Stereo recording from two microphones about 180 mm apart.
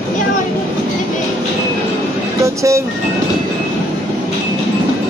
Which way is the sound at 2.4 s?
15° right (ahead or behind).